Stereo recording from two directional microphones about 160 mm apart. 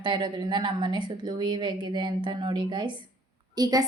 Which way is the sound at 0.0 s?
30° right (ahead or behind).